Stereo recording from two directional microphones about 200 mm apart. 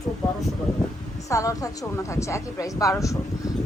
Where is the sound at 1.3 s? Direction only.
15° left (ahead or behind).